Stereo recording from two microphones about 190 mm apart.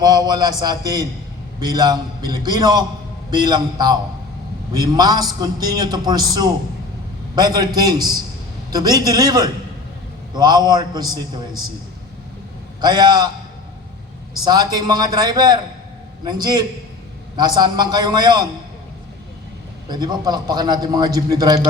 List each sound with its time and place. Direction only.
0.0 s a man's voice: 20° right (ahead or behind)
12.8 s a man's voice: 20° right (ahead or behind)
14.4 s a man's voice: 20° right (ahead or behind)
19.9 s a man's voice: 20° right (ahead or behind)